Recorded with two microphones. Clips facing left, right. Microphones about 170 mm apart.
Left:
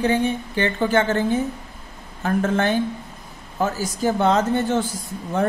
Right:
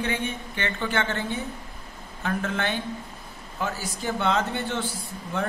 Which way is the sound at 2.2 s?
40° left (ahead or behind).